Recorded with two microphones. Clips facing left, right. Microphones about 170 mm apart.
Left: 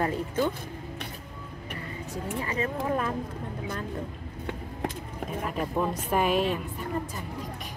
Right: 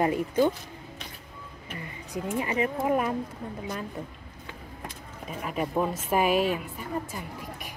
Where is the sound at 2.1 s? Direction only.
15° right (ahead or behind).